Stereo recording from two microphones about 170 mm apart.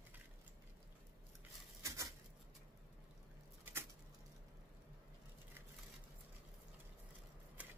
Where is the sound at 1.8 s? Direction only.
15° right (ahead or behind).